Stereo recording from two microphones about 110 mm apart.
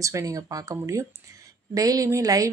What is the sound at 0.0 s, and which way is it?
A woman's voice, 30° right (ahead or behind).